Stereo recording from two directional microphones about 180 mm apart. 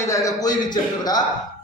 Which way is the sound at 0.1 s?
20° left (ahead or behind).